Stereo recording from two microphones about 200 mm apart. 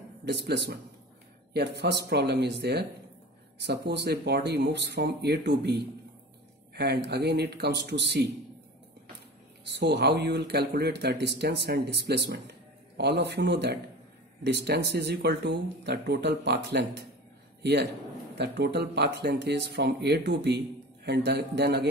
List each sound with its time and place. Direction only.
0.2 s speech: 55° right (ahead or behind)
9.8 s speech: 55° right (ahead or behind)
18.3 s speech: 55° right (ahead or behind)